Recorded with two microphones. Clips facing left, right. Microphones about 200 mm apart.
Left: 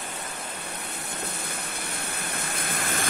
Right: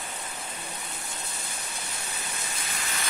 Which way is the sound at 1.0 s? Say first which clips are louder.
Left 5 dB; 60° left (ahead or behind).